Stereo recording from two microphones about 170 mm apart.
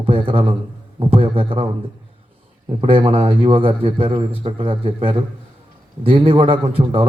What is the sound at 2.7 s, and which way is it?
A man's voice, 30° right (ahead or behind).